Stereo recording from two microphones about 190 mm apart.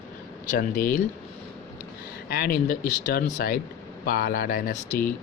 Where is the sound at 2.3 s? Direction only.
55° left (ahead or behind).